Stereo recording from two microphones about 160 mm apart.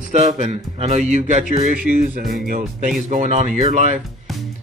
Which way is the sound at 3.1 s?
50° right (ahead or behind).